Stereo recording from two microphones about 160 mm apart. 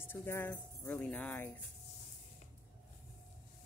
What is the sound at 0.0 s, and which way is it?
Speech, 15° left (ahead or behind).